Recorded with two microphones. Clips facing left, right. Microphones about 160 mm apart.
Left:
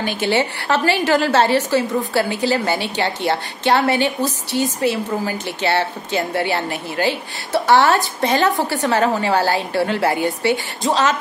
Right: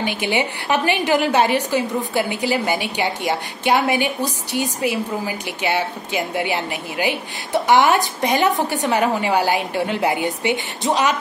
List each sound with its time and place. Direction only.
0.0 s a woman's voice: 15° right (ahead or behind)